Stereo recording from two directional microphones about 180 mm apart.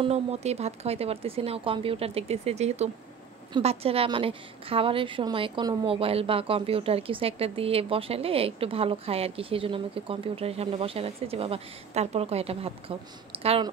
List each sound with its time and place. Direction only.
0.0 s a woman's voice: 35° right (ahead or behind)